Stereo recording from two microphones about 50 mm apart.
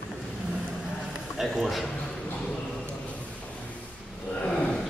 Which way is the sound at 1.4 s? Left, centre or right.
Centre.